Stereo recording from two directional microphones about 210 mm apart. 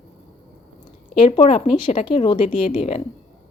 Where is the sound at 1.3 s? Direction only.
30° left (ahead or behind).